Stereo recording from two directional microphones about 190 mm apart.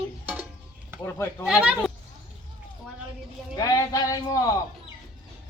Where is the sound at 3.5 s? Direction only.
20° left (ahead or behind).